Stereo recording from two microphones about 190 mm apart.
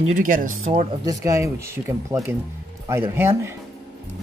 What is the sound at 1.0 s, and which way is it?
Speech, 15° right (ahead or behind).